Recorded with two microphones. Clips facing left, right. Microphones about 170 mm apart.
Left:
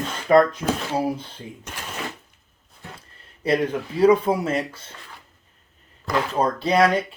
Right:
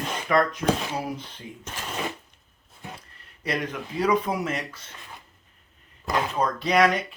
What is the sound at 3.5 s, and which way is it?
Speech, 30° left (ahead or behind).